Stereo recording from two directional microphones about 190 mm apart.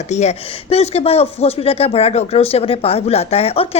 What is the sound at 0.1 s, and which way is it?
Speech, 35° left (ahead or behind).